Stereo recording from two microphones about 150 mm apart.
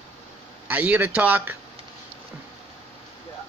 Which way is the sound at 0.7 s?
10° right (ahead or behind).